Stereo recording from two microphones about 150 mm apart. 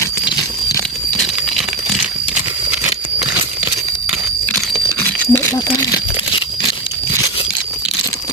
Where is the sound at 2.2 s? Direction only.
10° right (ahead or behind).